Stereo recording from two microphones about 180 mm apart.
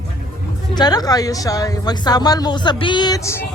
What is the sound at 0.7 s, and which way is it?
Speech, 20° left (ahead or behind).